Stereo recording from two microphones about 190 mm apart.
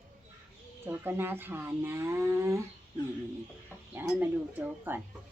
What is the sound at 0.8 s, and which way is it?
Speech, 10° right (ahead or behind).